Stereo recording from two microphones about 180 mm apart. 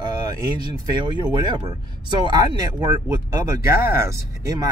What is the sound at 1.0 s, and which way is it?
Speech, 25° right (ahead or behind).